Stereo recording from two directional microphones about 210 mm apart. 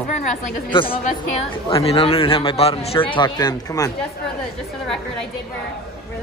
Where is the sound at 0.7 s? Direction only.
25° left (ahead or behind).